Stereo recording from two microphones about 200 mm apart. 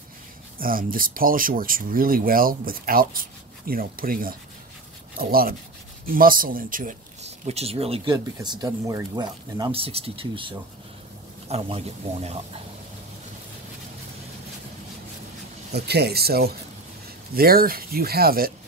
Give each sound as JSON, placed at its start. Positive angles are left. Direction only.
{"t": 0.6, "sound": "speech", "side_deg": -45}
{"t": 15.7, "sound": "speech", "side_deg": -55}